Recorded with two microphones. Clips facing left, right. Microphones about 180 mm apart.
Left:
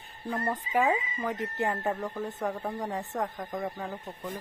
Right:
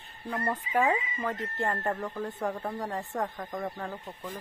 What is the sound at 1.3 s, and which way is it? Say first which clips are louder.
Speech: left 4 dB; 20° left (ahead or behind).